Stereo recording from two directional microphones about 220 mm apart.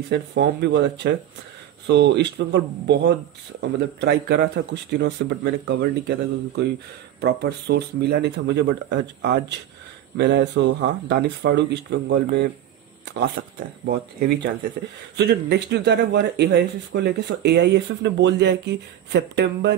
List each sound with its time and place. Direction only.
0.1 s speech: 50° right (ahead or behind)
13.8 s speech: 45° right (ahead or behind)